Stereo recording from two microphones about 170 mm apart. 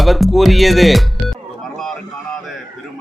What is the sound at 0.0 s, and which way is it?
Music, centre (ahead or behind).